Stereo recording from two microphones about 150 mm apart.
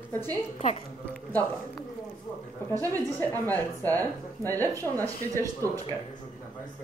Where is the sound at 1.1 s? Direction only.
10° left (ahead or behind).